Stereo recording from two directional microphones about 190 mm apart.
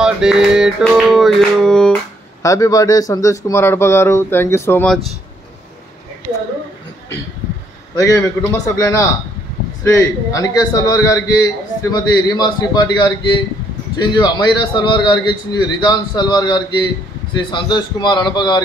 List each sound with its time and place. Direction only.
0.0 s music: 5° right (ahead or behind)
2.4 s speech: 15° left (ahead or behind)
7.9 s a man's voice: 15° left (ahead or behind)